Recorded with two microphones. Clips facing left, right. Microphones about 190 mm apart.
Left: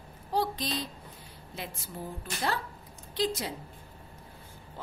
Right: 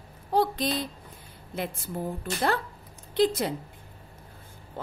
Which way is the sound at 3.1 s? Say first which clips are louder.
Right 7 dB; 55° right (ahead or behind).